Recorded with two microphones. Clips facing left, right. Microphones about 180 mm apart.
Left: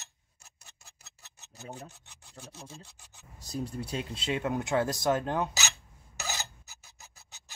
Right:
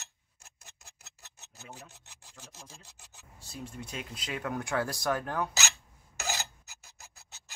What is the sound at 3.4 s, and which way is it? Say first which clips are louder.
Speech: left 7 dB; 40° left (ahead or behind).